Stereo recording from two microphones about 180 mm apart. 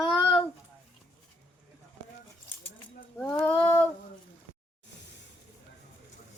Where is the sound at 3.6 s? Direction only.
10° left (ahead or behind).